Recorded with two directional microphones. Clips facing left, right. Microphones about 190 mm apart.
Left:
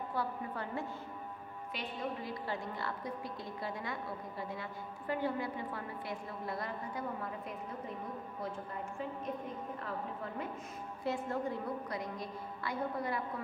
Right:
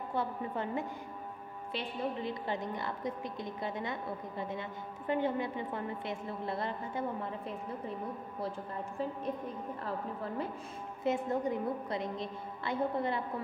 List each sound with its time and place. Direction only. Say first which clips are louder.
0.1 s a woman's voice: right 5 dB; 20° right (ahead or behind)
11.1 s a woman's voice: right 4 dB; 20° right (ahead or behind)